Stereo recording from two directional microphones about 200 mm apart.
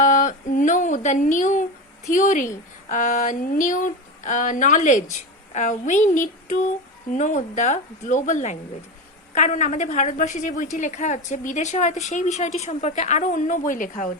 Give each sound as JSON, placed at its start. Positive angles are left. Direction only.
{"t": 0.0, "sound": "speech", "side_deg": 40}